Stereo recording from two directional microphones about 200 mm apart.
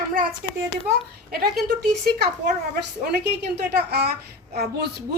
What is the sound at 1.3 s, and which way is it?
Speech, 50° right (ahead or behind).